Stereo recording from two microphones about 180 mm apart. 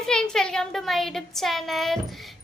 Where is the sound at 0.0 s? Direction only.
5° left (ahead or behind).